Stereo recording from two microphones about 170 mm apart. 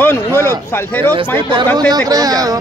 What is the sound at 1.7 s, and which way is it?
Speech, 25° right (ahead or behind).